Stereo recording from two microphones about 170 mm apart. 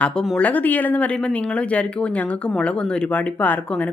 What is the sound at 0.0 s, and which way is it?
A woman's voice, 5° left (ahead or behind).